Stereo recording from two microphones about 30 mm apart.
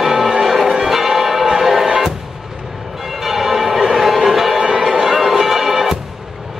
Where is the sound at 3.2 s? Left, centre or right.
Centre.